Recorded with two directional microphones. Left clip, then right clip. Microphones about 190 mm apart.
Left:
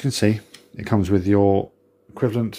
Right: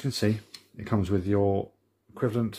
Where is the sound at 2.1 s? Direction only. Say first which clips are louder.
Left 6 dB; 15° left (ahead or behind).